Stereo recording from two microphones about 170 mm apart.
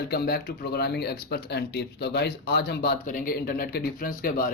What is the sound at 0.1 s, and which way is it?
Speech, 65° left (ahead or behind).